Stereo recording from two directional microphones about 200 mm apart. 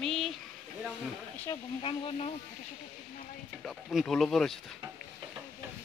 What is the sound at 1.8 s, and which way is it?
Speech, 25° left (ahead or behind).